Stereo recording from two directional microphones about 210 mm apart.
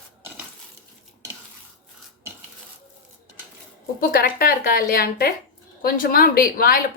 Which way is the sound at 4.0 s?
45° left (ahead or behind).